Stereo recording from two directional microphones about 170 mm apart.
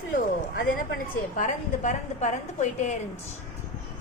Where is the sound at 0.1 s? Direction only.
55° left (ahead or behind).